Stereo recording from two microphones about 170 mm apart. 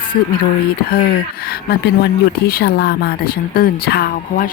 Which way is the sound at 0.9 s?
60° left (ahead or behind).